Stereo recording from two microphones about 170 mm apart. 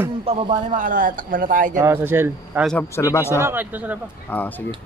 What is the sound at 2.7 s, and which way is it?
Speech, 15° left (ahead or behind).